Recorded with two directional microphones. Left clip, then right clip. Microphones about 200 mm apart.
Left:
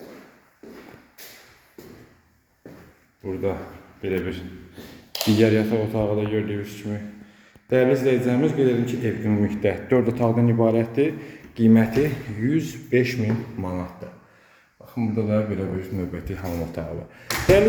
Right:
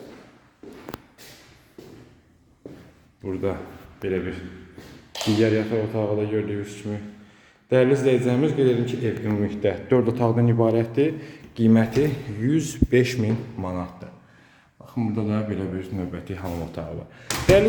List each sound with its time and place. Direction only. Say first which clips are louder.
4.0 s speech: even; 5° right (ahead or behind)
5.4 s a man's voice: left 2 dB; 5° left (ahead or behind)
12.5 s a man's voice: right 2 dB; 20° right (ahead or behind)
13.6 s a man's voice: even; 5° right (ahead or behind)
14.9 s speech: left 3 dB; 5° right (ahead or behind)